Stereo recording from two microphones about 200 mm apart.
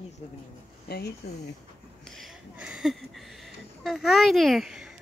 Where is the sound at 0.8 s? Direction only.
55° left (ahead or behind).